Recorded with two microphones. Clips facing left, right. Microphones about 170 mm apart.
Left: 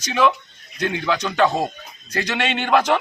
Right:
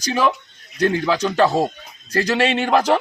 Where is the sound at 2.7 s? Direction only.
35° right (ahead or behind).